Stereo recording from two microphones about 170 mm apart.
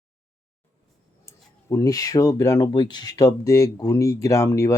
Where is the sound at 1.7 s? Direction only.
20° left (ahead or behind).